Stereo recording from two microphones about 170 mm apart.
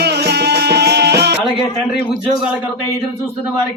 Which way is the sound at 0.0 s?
75° right (ahead or behind).